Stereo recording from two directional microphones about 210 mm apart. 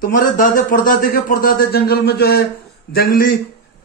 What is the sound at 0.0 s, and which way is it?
A man's voice, 40° left (ahead or behind).